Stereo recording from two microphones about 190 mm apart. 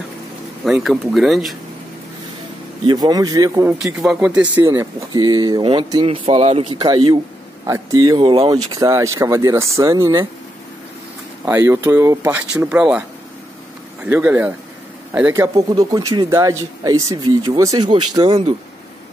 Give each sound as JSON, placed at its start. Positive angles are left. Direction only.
{"t": 0.8, "sound": "speech", "side_deg": 0}
{"t": 2.9, "sound": "speech", "side_deg": -20}
{"t": 3.7, "sound": "speech", "side_deg": -5}
{"t": 11.4, "sound": "speech", "side_deg": -10}
{"t": 14.0, "sound": "speech", "side_deg": -10}